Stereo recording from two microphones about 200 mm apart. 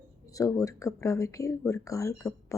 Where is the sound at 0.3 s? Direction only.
15° left (ahead or behind).